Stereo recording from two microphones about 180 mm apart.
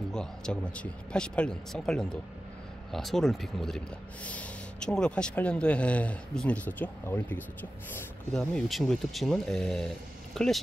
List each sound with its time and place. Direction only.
0.1 s speech: 5° left (ahead or behind)